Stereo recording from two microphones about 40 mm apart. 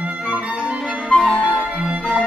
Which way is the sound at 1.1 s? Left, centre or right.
Left.